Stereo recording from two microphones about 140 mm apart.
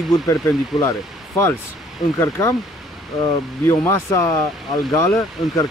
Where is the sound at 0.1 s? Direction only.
20° left (ahead or behind).